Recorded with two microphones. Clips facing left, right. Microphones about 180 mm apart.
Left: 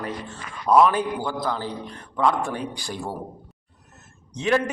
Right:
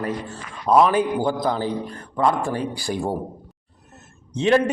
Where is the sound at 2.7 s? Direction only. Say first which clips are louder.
Right 7 dB; 10° right (ahead or behind).